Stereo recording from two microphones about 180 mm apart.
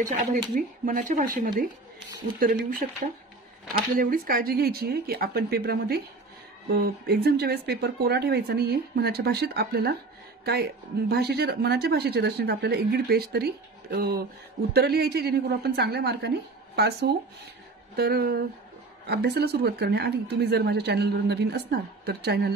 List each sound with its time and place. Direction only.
0.0 s speech: 45° right (ahead or behind)
4.0 s speech: 55° right (ahead or behind)